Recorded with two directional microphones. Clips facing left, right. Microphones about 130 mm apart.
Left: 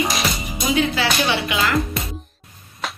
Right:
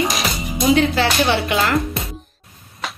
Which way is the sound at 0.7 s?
50° right (ahead or behind).